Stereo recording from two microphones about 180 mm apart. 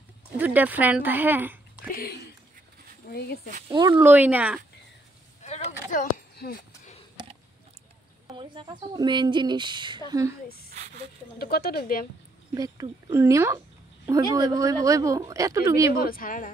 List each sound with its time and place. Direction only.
0.4 s a woman's voice: 10° right (ahead or behind)
3.1 s speech: 60° left (ahead or behind)
3.6 s speech: 25° right (ahead or behind)
4.0 s a woman's voice: 10° right (ahead or behind)
5.4 s a sound: 40° left (ahead or behind); by 6.6 s 55° left (ahead or behind)
7.2 s a sound: 25° right (ahead or behind)
8.3 s speech: 30° right (ahead or behind)
11.3 s speech: 60° left (ahead or behind)
12.5 s a woman's voice: 20° right (ahead or behind)
15.9 s speech: 55° left (ahead or behind)